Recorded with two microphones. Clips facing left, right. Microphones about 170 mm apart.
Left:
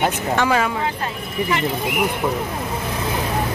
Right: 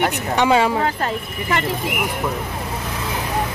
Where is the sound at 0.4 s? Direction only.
25° right (ahead or behind).